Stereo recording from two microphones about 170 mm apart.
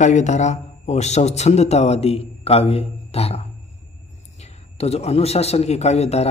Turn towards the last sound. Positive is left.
turn(degrees=40)  # may be behind; listen again after turning